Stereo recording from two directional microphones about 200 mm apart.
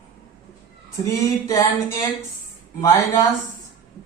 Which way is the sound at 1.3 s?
15° left (ahead or behind).